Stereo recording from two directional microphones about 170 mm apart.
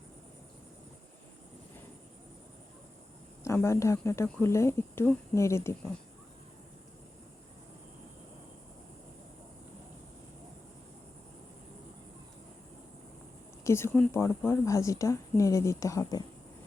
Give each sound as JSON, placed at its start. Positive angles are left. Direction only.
{"t": 3.4, "sound": "a woman's voice", "side_deg": 15}
{"t": 13.7, "sound": "a woman's voice", "side_deg": 15}